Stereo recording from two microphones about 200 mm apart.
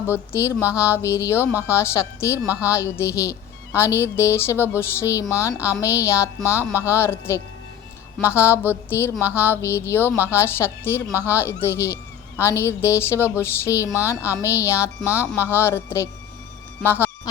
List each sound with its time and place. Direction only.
0.1 s a woman's voice: 15° left (ahead or behind)
2.4 s speech: 10° right (ahead or behind)
2.6 s a woman's voice: 15° left (ahead or behind)